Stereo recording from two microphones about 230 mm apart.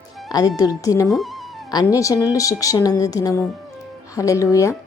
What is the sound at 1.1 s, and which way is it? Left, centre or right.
Music, centre.